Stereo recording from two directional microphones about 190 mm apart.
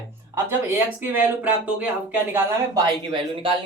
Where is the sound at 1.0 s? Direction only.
10° right (ahead or behind).